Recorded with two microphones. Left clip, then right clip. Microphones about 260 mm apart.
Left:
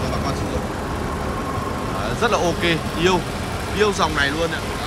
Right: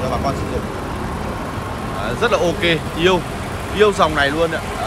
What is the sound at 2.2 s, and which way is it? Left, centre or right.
Speech, centre.